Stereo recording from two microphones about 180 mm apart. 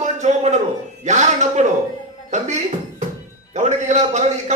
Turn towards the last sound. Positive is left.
turn(degrees=-40)  # may be behind; listen again after turning